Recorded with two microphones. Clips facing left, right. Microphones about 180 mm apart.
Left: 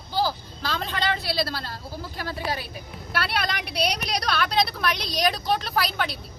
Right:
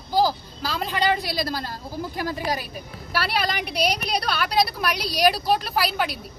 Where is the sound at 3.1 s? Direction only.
5° right (ahead or behind).